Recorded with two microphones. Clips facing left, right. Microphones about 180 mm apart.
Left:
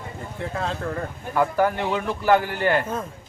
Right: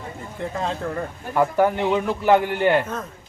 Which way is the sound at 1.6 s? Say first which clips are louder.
Right 3 dB; 20° right (ahead or behind).